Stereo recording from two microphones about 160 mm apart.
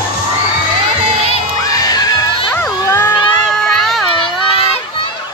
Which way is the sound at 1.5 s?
20° left (ahead or behind).